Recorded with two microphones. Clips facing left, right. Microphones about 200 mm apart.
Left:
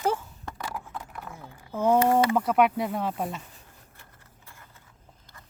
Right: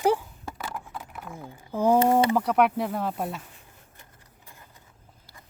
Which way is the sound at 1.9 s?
20° right (ahead or behind).